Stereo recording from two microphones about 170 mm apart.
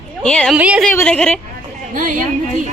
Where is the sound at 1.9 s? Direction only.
50° right (ahead or behind).